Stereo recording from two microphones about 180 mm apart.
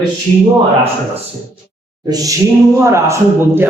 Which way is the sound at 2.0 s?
20° right (ahead or behind).